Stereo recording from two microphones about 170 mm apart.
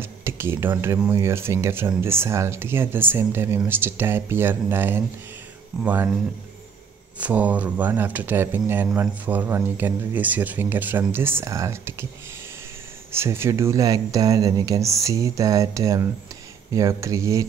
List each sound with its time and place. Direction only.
0.0 s speech: 15° right (ahead or behind)
7.2 s speech: 10° right (ahead or behind)
13.1 s speech: 15° right (ahead or behind)